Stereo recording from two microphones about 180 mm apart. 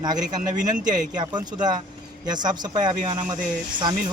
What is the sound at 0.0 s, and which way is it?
Speech, 20° right (ahead or behind).